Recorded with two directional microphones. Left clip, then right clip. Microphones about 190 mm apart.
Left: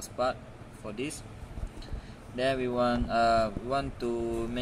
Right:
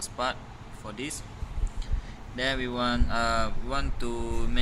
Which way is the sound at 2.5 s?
30° left (ahead or behind).